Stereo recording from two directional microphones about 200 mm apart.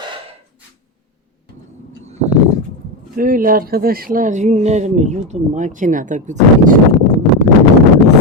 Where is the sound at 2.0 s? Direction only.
35° right (ahead or behind).